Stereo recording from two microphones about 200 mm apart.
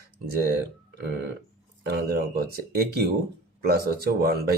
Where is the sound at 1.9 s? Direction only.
50° right (ahead or behind).